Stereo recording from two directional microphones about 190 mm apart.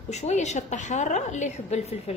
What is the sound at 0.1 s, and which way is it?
A woman's voice, 35° left (ahead or behind).